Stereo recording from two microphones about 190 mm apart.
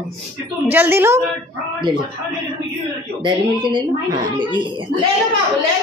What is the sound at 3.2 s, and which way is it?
Speech, 25° right (ahead or behind).